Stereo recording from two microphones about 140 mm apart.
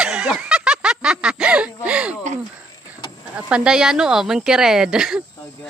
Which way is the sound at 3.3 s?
10° right (ahead or behind).